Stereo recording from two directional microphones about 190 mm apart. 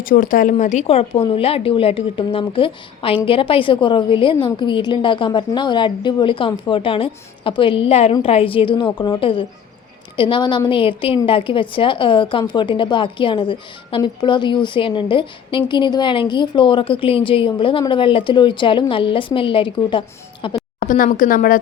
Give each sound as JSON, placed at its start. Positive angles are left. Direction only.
{"t": 0.0, "sound": "a woman's voice", "side_deg": 50}
{"t": 20.7, "sound": "speech", "side_deg": 45}